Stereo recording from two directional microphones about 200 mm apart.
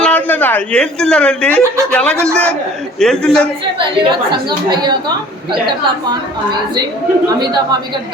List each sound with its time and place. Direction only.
0.0 s a man's voice: 5° left (ahead or behind)
3.8 s a woman's voice: 25° right (ahead or behind)